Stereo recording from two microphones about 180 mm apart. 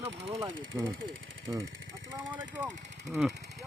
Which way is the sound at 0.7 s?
15° right (ahead or behind).